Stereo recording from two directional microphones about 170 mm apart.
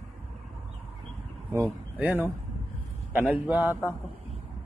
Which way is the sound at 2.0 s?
10° right (ahead or behind).